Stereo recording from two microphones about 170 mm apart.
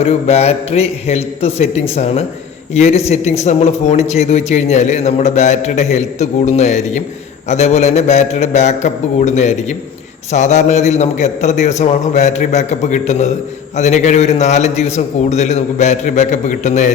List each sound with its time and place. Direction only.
0.0 s a man's voice: 40° left (ahead or behind)